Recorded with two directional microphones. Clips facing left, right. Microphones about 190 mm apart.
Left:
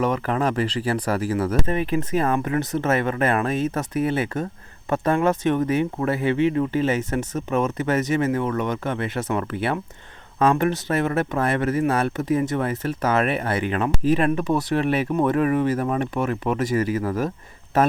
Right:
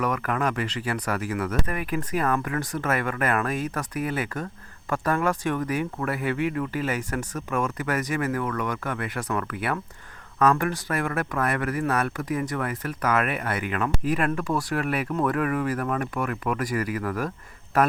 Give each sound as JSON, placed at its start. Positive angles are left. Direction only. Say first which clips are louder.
{"t": 0.0, "sound": "speech", "louder": "left 4 dB", "side_deg": 30}